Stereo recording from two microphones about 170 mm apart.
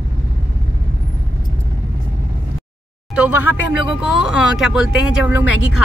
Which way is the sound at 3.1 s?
5° right (ahead or behind).